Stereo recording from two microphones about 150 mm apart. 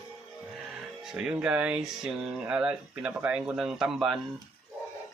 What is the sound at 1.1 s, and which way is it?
Speech, 5° right (ahead or behind).